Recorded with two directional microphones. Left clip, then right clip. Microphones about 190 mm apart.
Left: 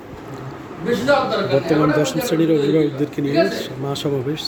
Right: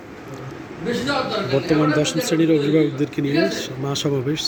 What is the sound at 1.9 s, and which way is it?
A man's voice, centre (ahead or behind).